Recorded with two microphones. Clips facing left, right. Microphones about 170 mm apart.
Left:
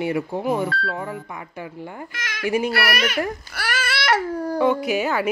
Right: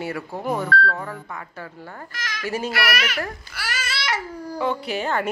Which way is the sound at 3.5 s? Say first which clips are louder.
Left 5 dB; 55° left (ahead or behind).